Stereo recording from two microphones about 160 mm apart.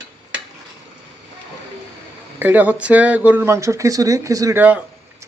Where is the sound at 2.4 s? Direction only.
10° right (ahead or behind).